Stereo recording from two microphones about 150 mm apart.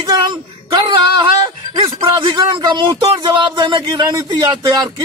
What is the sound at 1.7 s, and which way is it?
A man's voice, 35° right (ahead or behind).